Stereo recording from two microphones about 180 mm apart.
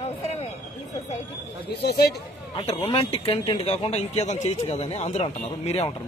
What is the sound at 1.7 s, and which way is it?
Speech, 65° left (ahead or behind).